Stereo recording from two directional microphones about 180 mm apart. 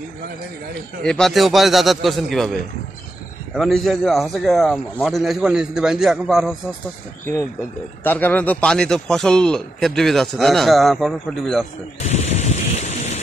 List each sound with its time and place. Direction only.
1.0 s a man's voice: 5° left (ahead or behind)
3.5 s a man's voice: centre (ahead or behind)
8.0 s a man's voice: 10° left (ahead or behind)
12.1 s a sound: 40° left (ahead or behind)